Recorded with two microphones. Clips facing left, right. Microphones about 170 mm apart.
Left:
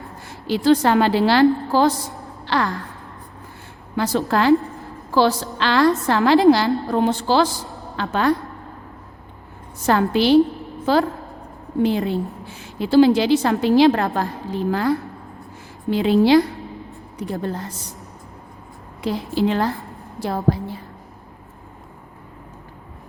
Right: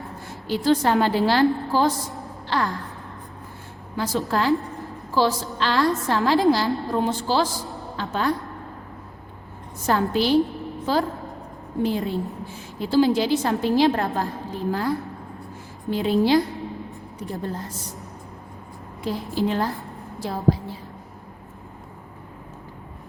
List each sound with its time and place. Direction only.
0.3 s a woman's voice: 85° left
3.9 s a woman's voice: 70° left (ahead or behind)
9.8 s a woman's voice: 80° left
17.2 s a woman's voice: 75° left (ahead or behind)
19.0 s a woman's voice: 90° left
20.1 s a sound: 60° left (ahead or behind)